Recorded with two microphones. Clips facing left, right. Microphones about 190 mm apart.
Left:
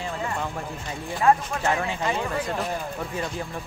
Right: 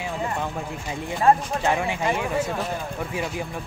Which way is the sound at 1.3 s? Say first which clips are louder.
Right 1 dB; 30° right (ahead or behind).